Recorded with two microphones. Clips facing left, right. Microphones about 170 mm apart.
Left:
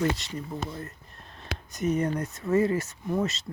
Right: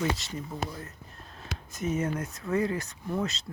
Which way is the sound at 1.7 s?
Centre (ahead or behind).